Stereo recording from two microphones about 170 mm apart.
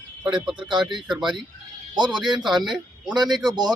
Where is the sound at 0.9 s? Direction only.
Centre (ahead or behind).